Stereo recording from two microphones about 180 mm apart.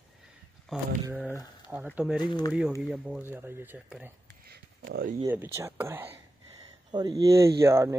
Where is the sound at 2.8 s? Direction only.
5° right (ahead or behind).